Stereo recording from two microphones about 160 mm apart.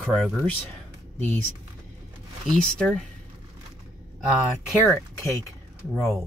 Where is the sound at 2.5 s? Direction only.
5° left (ahead or behind).